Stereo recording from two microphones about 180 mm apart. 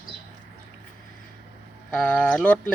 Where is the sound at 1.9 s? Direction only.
5° left (ahead or behind).